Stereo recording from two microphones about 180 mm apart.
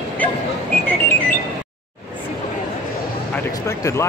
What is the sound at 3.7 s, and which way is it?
Speech, 15° left (ahead or behind).